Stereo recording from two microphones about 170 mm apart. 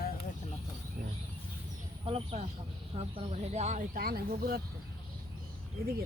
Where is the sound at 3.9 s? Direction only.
60° right (ahead or behind).